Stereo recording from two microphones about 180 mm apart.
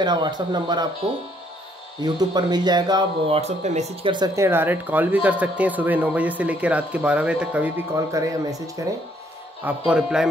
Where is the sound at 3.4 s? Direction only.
40° right (ahead or behind); by 8.9 s 20° right (ahead or behind).